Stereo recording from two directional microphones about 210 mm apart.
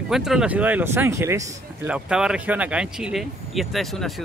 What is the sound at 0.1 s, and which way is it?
Speech, centre (ahead or behind).